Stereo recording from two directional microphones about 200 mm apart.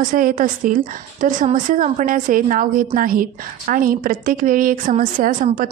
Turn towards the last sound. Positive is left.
turn(degrees=-40)  # may be behind; listen again after turning